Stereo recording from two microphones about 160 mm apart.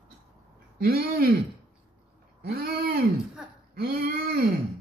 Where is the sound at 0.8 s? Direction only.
70° right (ahead or behind).